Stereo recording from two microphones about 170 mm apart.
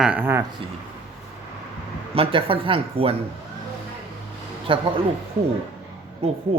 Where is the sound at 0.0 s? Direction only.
10° right (ahead or behind).